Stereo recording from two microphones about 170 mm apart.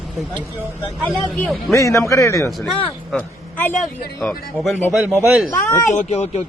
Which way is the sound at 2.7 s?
5° left (ahead or behind).